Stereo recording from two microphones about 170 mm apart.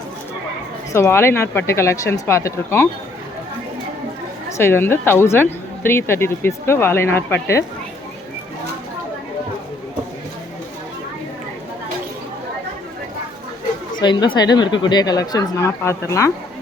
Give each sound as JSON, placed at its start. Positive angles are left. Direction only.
{"t": 0.9, "sound": "a woman's voice", "side_deg": 15}
{"t": 4.4, "sound": "a woman's voice", "side_deg": 15}
{"t": 14.0, "sound": "speech", "side_deg": 25}